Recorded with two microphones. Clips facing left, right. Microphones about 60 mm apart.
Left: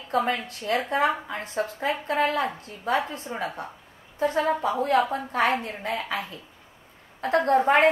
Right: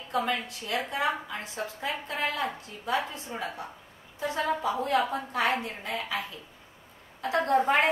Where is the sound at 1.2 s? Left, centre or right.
Left.